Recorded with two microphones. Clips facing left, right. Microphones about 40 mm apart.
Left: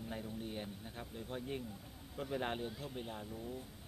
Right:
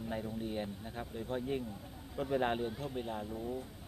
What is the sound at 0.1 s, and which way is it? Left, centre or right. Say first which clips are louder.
Speech: right 6 dB; centre.